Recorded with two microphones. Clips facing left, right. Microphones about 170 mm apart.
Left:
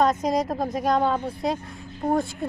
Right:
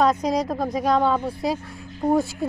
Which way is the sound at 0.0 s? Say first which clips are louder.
Right 1 dB; centre (ahead or behind).